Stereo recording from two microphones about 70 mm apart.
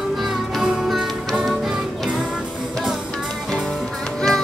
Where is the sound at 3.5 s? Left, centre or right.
Centre.